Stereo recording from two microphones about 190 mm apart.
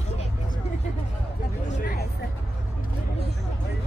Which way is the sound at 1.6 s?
40° left (ahead or behind).